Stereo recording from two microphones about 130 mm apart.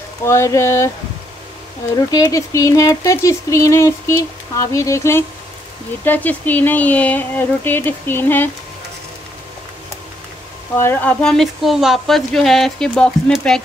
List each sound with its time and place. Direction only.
0.2 s speech: 20° left (ahead or behind)
2.0 s speech: 30° left (ahead or behind)
10.8 s speech: 15° left (ahead or behind)